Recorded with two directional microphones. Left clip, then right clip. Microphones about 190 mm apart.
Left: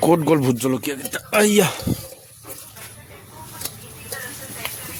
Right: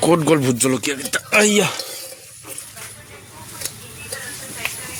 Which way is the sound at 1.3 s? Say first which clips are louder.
Right 1 dB; 20° left (ahead or behind).